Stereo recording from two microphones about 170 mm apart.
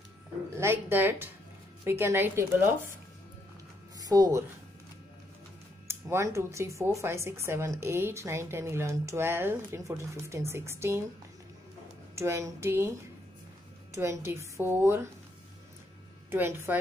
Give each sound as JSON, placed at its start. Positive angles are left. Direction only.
{"t": 0.6, "sound": "speech", "side_deg": -15}
{"t": 4.0, "sound": "speech", "side_deg": -20}
{"t": 5.9, "sound": "speech", "side_deg": -15}
{"t": 12.2, "sound": "speech", "side_deg": -15}
{"t": 13.9, "sound": "speech", "side_deg": -15}
{"t": 16.3, "sound": "speech", "side_deg": -15}